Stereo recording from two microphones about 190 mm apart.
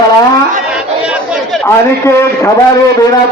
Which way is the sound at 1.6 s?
15° left (ahead or behind).